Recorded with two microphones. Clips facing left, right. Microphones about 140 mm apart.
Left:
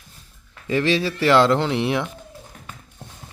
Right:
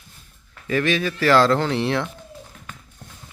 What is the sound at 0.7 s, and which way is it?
Speech, 25° left (ahead or behind).